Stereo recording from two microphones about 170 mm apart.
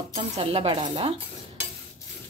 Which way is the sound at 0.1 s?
35° right (ahead or behind).